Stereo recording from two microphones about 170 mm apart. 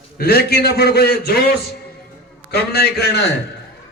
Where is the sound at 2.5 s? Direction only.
70° left (ahead or behind).